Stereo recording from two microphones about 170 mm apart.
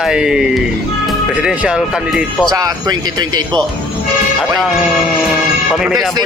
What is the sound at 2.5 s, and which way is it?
Speech, 20° right (ahead or behind).